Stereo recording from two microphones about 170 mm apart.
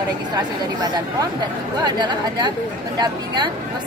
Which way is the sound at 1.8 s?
25° right (ahead or behind).